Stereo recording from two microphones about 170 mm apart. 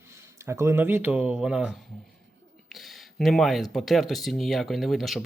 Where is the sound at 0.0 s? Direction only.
15° right (ahead or behind).